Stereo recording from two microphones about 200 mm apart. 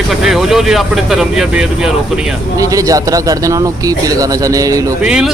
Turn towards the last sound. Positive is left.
turn(degrees=-5)  # may be behind; listen again after turning